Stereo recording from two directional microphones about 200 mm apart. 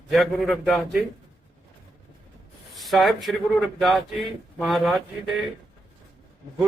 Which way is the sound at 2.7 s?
Centre (ahead or behind).